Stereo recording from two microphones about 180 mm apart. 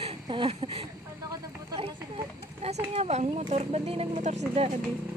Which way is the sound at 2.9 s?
35° right (ahead or behind).